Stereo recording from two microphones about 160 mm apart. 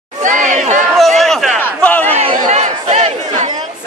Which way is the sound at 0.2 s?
50° right (ahead or behind).